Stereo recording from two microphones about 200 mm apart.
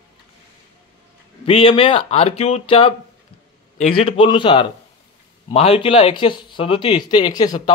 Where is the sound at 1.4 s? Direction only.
30° left (ahead or behind).